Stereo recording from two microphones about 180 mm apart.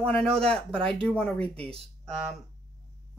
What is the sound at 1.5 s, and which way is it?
Speech, 30° right (ahead or behind).